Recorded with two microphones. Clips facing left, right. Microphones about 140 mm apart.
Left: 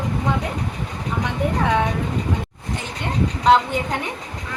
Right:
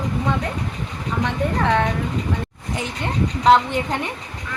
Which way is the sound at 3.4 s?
5° left (ahead or behind).